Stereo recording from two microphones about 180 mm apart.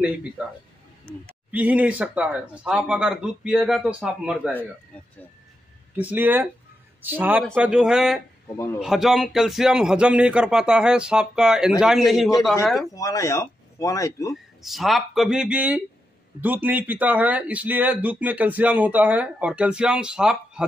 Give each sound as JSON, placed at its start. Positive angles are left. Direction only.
{"t": 0.0, "sound": "speech", "side_deg": -5}
{"t": 1.5, "sound": "speech", "side_deg": -10}
{"t": 5.9, "sound": "speech", "side_deg": -10}
{"t": 12.9, "sound": "speech", "side_deg": 20}
{"t": 14.3, "sound": "speech", "side_deg": 0}